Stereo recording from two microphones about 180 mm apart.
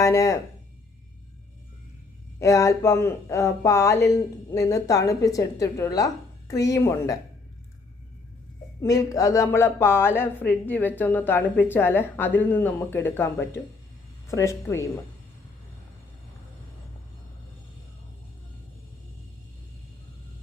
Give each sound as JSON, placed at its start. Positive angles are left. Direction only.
{"t": 0.0, "sound": "speech", "side_deg": 15}
{"t": 2.4, "sound": "a woman's voice", "side_deg": 15}
{"t": 8.8, "sound": "speech", "side_deg": 20}